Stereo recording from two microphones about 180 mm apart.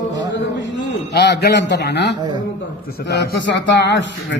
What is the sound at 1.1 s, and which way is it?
A man's voice, 70° left (ahead or behind).